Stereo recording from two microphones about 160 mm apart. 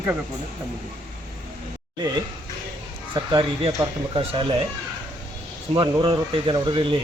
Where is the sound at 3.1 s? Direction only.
30° right (ahead or behind).